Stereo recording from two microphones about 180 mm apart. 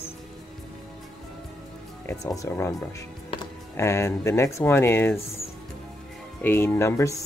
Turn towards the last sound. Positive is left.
turn(degrees=15)  # may be behind; listen again after turning